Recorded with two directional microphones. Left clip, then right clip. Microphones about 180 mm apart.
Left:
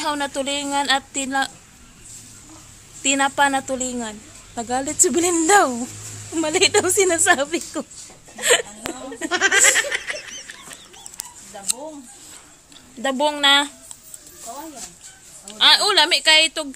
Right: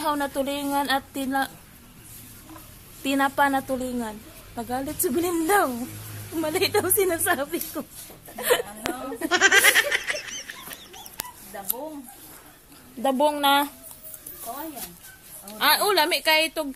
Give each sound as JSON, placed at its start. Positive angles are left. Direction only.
{"t": 0.0, "sound": "a woman's voice", "side_deg": 5}
{"t": 3.0, "sound": "a woman's voice", "side_deg": 10}
{"t": 4.6, "sound": "speech", "side_deg": 25}
{"t": 8.4, "sound": "a sound", "side_deg": 10}
{"t": 8.8, "sound": "fowl", "side_deg": 0}
{"t": 13.0, "sound": "a woman's voice", "side_deg": 0}
{"t": 15.5, "sound": "a woman's voice", "side_deg": -10}